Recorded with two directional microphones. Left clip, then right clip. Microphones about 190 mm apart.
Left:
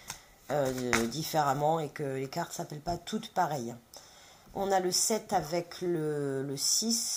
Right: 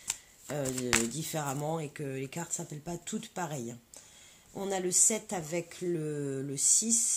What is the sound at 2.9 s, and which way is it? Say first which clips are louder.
Speech: left 5 dB; 45° right (ahead or behind).